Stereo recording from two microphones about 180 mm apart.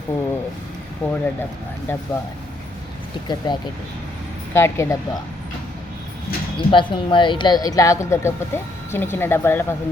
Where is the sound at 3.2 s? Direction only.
25° left (ahead or behind).